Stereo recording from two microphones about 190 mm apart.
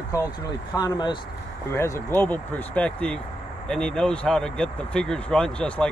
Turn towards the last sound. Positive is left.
turn(degrees=5)  # may be behind; listen again after turning